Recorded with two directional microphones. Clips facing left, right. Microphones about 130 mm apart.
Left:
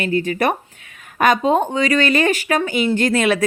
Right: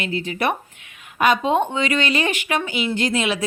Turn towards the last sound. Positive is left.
turn(degrees=50)  # may be behind; listen again after turning